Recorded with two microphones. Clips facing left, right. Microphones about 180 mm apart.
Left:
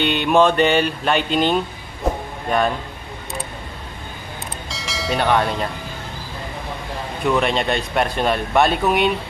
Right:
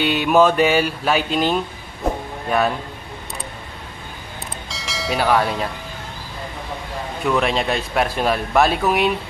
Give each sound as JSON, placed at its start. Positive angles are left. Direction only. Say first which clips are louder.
{"t": 0.0, "sound": "speech", "louder": "even", "side_deg": -5}
{"t": 4.6, "sound": "bell", "louder": "left 1 dB", "side_deg": 0}
{"t": 7.2, "sound": "speech", "louder": "left 1 dB", "side_deg": 0}